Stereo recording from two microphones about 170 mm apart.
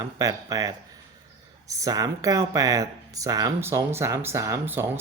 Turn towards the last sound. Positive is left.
turn(degrees=-10)  # may be behind; listen again after turning